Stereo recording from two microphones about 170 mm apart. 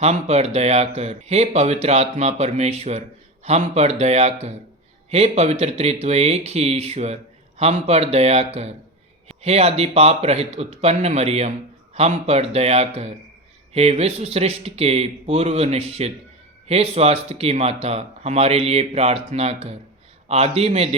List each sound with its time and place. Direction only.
0.0 s speech: 40° right (ahead or behind)